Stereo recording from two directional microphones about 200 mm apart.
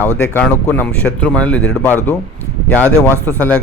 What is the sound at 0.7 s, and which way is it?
Speech, 10° left (ahead or behind).